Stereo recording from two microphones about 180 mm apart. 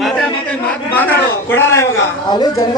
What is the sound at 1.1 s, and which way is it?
Speech, 10° left (ahead or behind).